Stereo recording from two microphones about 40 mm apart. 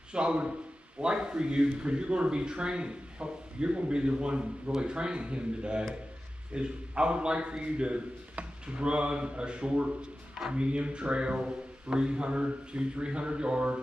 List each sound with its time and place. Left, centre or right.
0.1 s a man's voice: right